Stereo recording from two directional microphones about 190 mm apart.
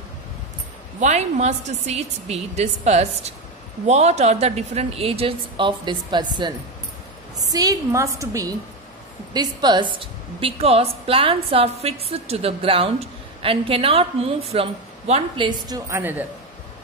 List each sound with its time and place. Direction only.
0.9 s a woman's voice: 35° right (ahead or behind)
15.9 s a woman's voice: 10° right (ahead or behind)